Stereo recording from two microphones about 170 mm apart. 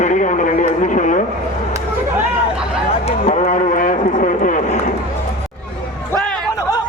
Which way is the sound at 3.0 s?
40° left (ahead or behind).